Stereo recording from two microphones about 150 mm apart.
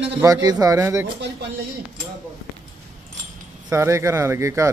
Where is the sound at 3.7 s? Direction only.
20° right (ahead or behind).